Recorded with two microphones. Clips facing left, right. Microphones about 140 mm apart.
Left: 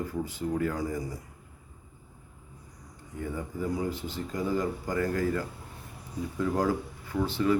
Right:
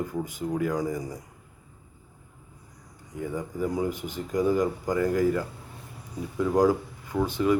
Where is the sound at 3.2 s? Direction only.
15° right (ahead or behind).